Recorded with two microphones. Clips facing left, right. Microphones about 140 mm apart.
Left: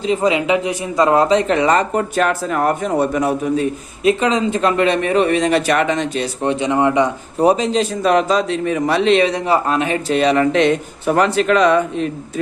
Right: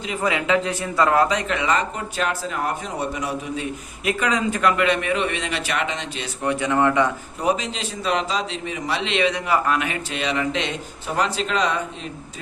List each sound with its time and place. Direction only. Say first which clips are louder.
0.0 s speech: left 8 dB; 25° left (ahead or behind); by 3.7 s 50° left (ahead or behind)
4.0 s speech: left 7 dB; 25° left (ahead or behind); by 6.2 s 50° left (ahead or behind)
6.2 s speech: left 5 dB; 25° left (ahead or behind)
7.3 s a man's voice: left 11 dB; 35° left (ahead or behind); by 12.0 s 60° left (ahead or behind)